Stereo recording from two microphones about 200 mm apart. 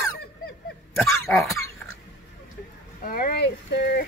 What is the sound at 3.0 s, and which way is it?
Speech, 45° left (ahead or behind).